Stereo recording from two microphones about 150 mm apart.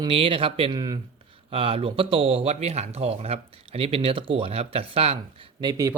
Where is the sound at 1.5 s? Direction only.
40° right (ahead or behind).